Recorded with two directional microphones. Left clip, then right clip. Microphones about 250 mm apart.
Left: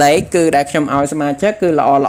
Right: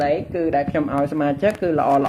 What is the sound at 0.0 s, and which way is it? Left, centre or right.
Speech, left.